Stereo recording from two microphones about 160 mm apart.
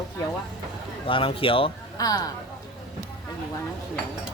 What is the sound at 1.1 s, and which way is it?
Speech, 35° left (ahead or behind).